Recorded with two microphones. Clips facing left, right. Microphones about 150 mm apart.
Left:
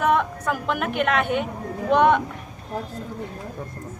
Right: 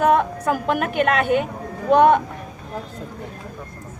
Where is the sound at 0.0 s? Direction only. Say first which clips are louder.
Right 4 dB; 35° right (ahead or behind).